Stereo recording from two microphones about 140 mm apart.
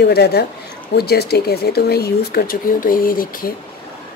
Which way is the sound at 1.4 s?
90° left.